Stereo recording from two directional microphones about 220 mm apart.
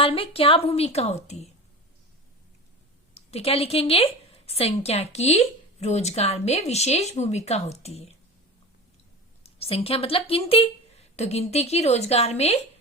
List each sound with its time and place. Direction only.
0.0 s a woman's voice: 25° left (ahead or behind)
3.2 s a woman's voice: 25° left (ahead or behind)
9.4 s a woman's voice: 25° left (ahead or behind)